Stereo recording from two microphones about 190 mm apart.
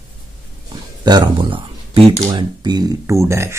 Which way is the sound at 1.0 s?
20° right (ahead or behind).